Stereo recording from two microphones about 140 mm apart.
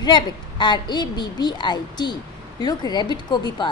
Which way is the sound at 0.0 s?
30° left (ahead or behind).